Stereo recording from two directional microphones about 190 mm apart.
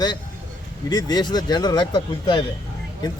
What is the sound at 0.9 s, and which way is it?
Speech, 20° left (ahead or behind).